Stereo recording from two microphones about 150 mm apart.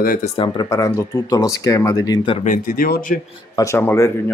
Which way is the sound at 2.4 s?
65° left (ahead or behind).